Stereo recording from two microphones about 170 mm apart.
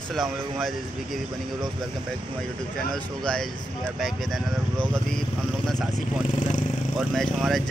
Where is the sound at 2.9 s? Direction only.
5° left (ahead or behind).